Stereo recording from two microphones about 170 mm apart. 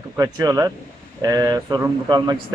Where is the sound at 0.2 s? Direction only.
20° right (ahead or behind).